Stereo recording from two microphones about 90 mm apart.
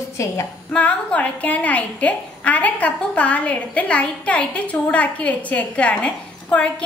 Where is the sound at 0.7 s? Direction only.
15° left (ahead or behind).